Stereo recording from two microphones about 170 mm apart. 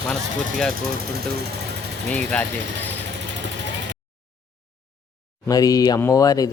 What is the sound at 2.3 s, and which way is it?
Speech, 5° left (ahead or behind).